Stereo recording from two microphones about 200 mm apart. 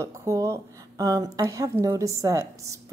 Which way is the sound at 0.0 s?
15° right (ahead or behind).